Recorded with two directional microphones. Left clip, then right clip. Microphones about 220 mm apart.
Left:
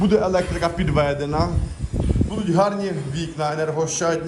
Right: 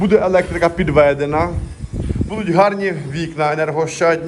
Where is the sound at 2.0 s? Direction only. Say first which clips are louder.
Left 1 dB; centre (ahead or behind).